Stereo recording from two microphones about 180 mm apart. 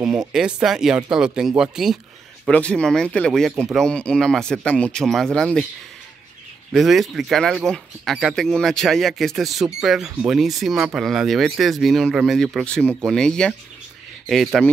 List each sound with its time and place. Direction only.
0.3 s speech: 5° right (ahead or behind)
6.7 s speech: centre (ahead or behind)